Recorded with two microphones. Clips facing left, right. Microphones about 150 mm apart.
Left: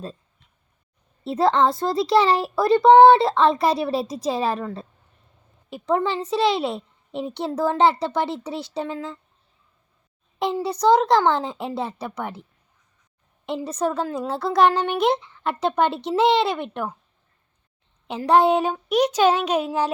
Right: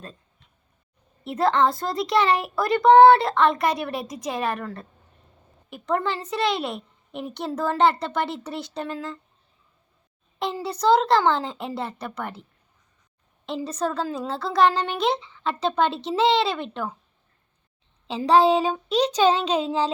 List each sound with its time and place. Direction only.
1.2 s speech: 25° left (ahead or behind)
5.9 s speech: 20° left (ahead or behind)
10.4 s speech: 20° left (ahead or behind)
13.7 s speech: 20° left (ahead or behind)
18.3 s speech: 15° left (ahead or behind)